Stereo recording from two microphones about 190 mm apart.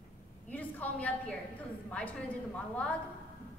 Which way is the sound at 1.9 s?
5° left (ahead or behind).